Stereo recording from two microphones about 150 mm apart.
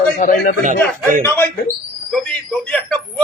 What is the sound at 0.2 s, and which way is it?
Speech, 55° left (ahead or behind).